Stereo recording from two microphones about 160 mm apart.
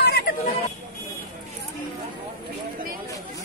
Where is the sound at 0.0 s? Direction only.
80° left.